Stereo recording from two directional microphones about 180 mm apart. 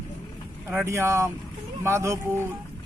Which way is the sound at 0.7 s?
10° right (ahead or behind).